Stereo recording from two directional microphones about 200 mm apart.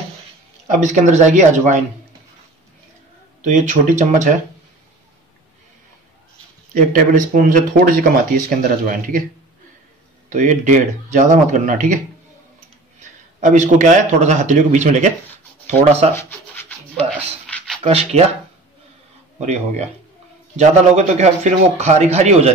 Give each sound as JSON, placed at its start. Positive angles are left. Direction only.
{"t": 0.7, "sound": "a man's voice", "side_deg": -35}
{"t": 3.4, "sound": "a man's voice", "side_deg": -40}
{"t": 6.7, "sound": "speech", "side_deg": -45}
{"t": 10.3, "sound": "a man's voice", "side_deg": -35}
{"t": 13.4, "sound": "a man's voice", "side_deg": -40}
{"t": 16.1, "sound": "rub", "side_deg": 10}
{"t": 17.8, "sound": "a man's voice", "side_deg": -30}
{"t": 20.5, "sound": "a man's voice", "side_deg": -35}